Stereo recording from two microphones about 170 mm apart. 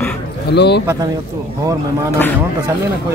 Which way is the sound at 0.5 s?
75° left (ahead or behind).